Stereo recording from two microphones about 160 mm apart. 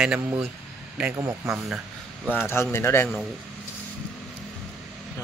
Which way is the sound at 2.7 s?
15° left (ahead or behind).